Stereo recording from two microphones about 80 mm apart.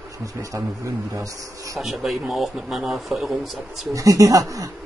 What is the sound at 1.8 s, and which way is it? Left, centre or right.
Speech, centre.